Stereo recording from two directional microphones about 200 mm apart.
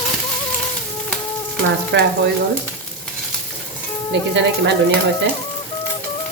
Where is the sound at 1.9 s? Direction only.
60° right (ahead or behind).